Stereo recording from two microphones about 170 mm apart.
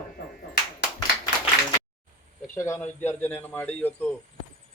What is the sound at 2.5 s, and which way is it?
A man's voice, 15° left (ahead or behind).